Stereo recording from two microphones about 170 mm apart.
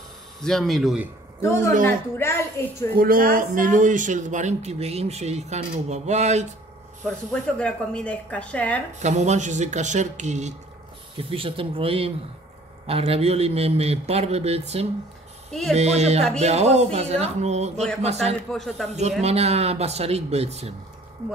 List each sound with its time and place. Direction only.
0.4 s speech: centre (ahead or behind)
1.4 s a woman's voice: 15° left (ahead or behind)
2.9 s a man's voice: 60° right (ahead or behind); by 6.4 s 40° right (ahead or behind)
7.5 s a woman's voice: 5° left (ahead or behind)
9.0 s a man's voice: 45° right (ahead or behind)
11.1 s speech: 30° right (ahead or behind)
18.5 s speech: centre (ahead or behind)
19.2 s speech: 35° right (ahead or behind)